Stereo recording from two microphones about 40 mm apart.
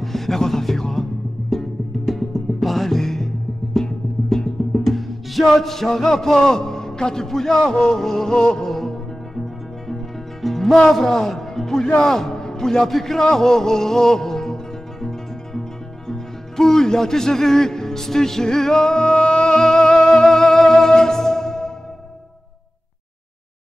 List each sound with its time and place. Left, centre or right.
0.0 s music: centre
7.7 s a sound: centre
8.0 s music: centre
8.6 s music: centre
10.8 s a man's voice: centre
11.8 s a sound: centre
16.1 s music: centre